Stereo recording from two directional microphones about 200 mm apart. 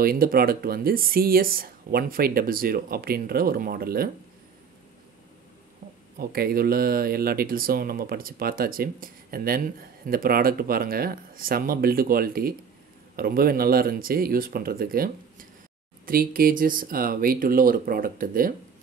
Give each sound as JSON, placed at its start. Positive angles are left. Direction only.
{"t": 0.0, "sound": "speech", "side_deg": -45}
{"t": 6.1, "sound": "speech", "side_deg": -50}